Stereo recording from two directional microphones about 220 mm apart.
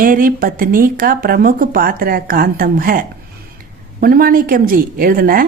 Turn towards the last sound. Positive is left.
turn(degrees=-40)  # may be behind; listen again after turning